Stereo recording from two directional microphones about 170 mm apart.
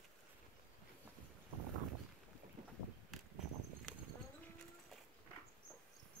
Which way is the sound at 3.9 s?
5° left (ahead or behind).